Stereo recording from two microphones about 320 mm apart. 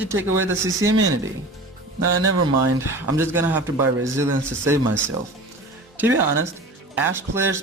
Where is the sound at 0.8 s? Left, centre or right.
Right.